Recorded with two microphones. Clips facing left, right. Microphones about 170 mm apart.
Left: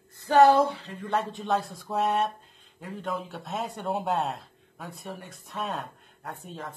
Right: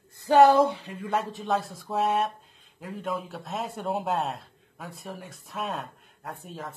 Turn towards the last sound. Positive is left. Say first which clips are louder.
# even
turn(degrees=0)  # may be behind; listen again after turning